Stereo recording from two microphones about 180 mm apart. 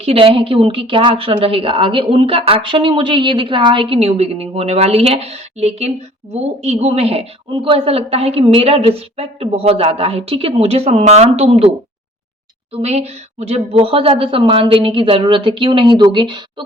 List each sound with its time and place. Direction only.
0.0 s a woman's voice: 30° right (ahead or behind)
12.7 s a woman's voice: 35° right (ahead or behind)